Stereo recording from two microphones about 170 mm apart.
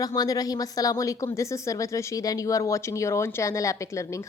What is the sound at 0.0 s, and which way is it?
A woman's voice, 20° left (ahead or behind).